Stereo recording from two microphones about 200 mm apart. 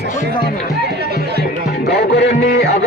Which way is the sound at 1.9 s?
55° left (ahead or behind).